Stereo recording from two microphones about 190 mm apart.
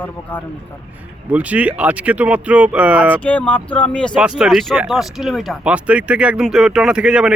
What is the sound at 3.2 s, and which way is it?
Speech, 5° left (ahead or behind).